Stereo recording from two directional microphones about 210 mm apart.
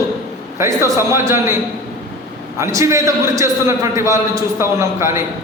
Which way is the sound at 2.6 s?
15° right (ahead or behind).